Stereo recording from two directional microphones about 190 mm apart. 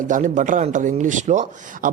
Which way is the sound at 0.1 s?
40° right (ahead or behind).